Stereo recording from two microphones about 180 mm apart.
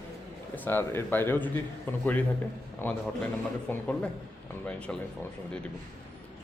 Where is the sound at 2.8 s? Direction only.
10° left (ahead or behind).